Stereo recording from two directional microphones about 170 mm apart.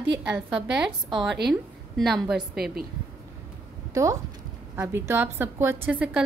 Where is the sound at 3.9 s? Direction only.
20° right (ahead or behind).